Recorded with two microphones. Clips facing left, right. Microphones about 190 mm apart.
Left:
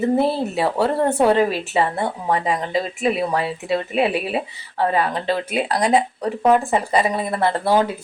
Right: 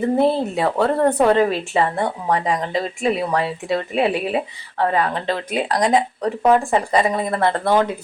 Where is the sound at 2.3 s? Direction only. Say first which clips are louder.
Right 1 dB; 25° left (ahead or behind).